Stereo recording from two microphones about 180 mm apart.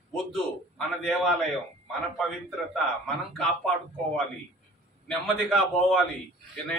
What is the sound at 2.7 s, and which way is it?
A man's voice, centre (ahead or behind).